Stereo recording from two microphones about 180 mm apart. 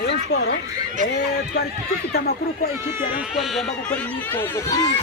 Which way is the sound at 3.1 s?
5° right (ahead or behind).